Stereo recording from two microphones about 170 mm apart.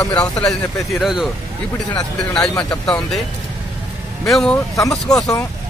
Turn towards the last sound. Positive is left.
turn(degrees=20)  # may be behind; listen again after turning